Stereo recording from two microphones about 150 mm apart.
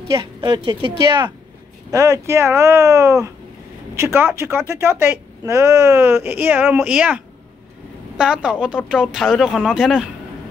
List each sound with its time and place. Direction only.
0.1 s speech: 35° right (ahead or behind)
1.9 s a woman's voice: 20° right (ahead or behind); by 10.0 s centre (ahead or behind)